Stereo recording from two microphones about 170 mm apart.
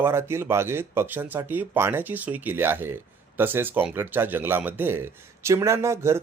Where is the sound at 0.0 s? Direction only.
15° right (ahead or behind).